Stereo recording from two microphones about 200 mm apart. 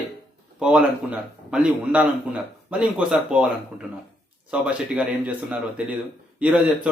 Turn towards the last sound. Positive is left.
turn(degrees=-5)  # may be behind; listen again after turning